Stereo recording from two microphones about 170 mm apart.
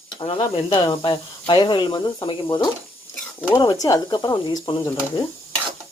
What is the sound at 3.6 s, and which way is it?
Speech, 20° left (ahead or behind).